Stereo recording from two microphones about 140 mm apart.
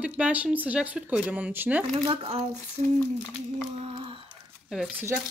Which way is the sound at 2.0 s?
45° right (ahead or behind).